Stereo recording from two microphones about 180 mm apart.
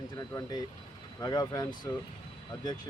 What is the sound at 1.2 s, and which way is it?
Speech, 20° left (ahead or behind).